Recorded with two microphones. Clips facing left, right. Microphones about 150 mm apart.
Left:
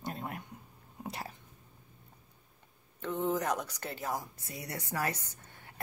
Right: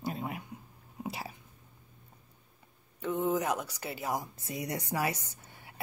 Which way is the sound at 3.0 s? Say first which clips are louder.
Right 2 dB; 10° right (ahead or behind).